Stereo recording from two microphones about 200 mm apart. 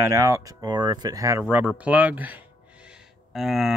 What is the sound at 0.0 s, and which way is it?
Speech, 15° right (ahead or behind).